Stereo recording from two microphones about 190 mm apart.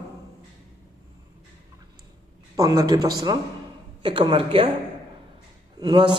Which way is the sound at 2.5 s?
20° right (ahead or behind).